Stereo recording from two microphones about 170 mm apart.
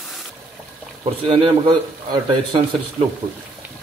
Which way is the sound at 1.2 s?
35° right (ahead or behind).